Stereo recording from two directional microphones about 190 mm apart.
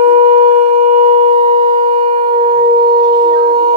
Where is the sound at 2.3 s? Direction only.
25° right (ahead or behind).